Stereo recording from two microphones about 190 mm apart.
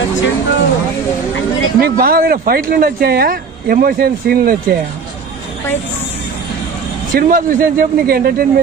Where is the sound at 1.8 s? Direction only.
50° right (ahead or behind).